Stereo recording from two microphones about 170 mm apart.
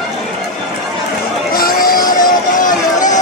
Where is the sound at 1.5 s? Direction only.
60° left (ahead or behind).